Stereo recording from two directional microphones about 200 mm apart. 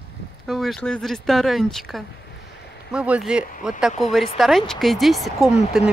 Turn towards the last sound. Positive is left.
turn(degrees=0)  # may be behind; listen again after turning